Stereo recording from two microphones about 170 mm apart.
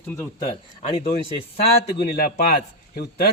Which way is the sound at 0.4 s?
40° left (ahead or behind).